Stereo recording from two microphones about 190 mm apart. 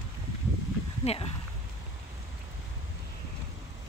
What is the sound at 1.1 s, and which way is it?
Speech, 35° left (ahead or behind).